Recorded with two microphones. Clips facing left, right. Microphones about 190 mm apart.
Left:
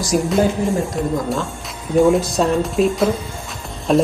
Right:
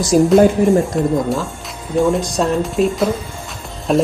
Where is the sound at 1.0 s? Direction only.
Centre (ahead or behind).